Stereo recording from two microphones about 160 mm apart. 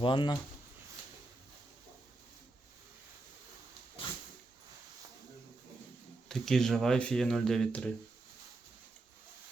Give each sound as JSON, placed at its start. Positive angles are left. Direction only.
{"t": 0.0, "sound": "speech", "side_deg": 30}
{"t": 6.2, "sound": "speech", "side_deg": 0}